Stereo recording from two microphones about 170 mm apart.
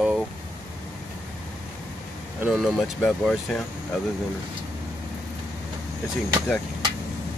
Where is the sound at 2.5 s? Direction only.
Centre (ahead or behind).